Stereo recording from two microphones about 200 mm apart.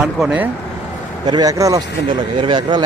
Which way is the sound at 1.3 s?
20° right (ahead or behind).